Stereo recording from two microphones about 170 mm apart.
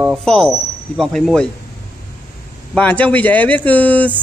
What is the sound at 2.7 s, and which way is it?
Speech, 10° left (ahead or behind).